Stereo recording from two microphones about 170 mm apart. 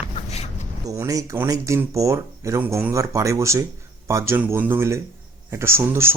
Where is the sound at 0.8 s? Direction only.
20° right (ahead or behind).